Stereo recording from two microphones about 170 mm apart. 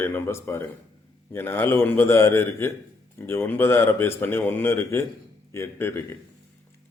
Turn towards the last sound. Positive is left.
turn(degrees=15)  # may be behind; listen again after turning